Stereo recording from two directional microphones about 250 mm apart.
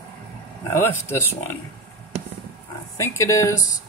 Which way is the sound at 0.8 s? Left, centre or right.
Centre.